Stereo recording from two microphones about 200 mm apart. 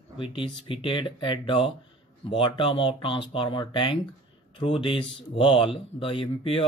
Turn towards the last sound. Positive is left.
turn(degrees=25)  # may be behind; listen again after turning